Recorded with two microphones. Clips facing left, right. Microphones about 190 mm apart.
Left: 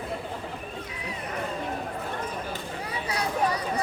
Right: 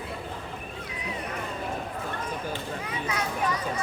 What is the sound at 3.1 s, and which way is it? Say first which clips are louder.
Children playing: left 3 dB; 35° left (ahead or behind).